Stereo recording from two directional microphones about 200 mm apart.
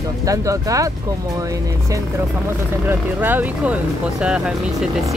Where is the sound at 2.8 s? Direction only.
10° right (ahead or behind).